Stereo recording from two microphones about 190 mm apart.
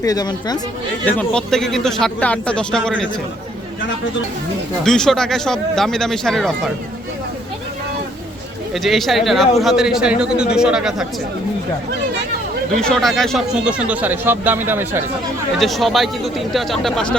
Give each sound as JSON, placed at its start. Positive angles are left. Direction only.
{"t": 0.0, "sound": "speech", "side_deg": 20}
{"t": 1.0, "sound": "a man's voice", "side_deg": 5}
{"t": 4.9, "sound": "a man's voice", "side_deg": 0}
{"t": 8.7, "sound": "a man's voice", "side_deg": 0}
{"t": 12.7, "sound": "speech", "side_deg": 5}
{"t": 15.5, "sound": "a man's voice", "side_deg": 0}